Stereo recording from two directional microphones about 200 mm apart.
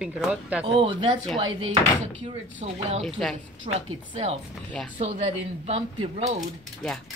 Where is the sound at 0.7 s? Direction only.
25° right (ahead or behind).